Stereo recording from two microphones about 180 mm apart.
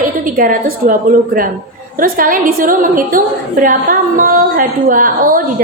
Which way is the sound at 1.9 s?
50° right (ahead or behind).